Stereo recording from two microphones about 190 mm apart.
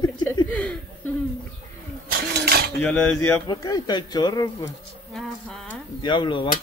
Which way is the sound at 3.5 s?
20° left (ahead or behind).